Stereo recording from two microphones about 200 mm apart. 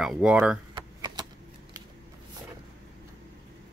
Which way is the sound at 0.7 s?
20° right (ahead or behind).